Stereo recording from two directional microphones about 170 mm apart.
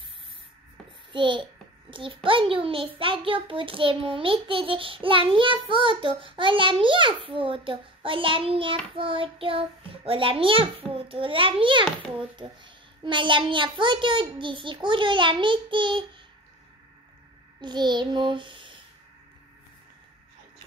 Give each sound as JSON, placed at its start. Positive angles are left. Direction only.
{"t": 1.1, "sound": "a child's voice", "side_deg": -30}
{"t": 17.6, "sound": "child singing", "side_deg": -25}